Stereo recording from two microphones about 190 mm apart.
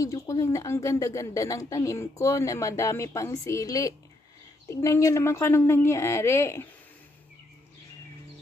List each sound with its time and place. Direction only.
0.0 s a woman's voice: 15° left (ahead or behind)